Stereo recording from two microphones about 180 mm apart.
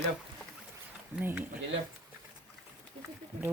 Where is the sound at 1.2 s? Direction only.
10° right (ahead or behind).